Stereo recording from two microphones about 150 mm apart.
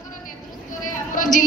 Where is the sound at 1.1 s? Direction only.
60° left (ahead or behind).